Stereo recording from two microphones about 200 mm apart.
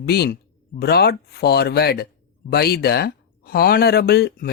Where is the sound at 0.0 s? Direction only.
50° left (ahead or behind).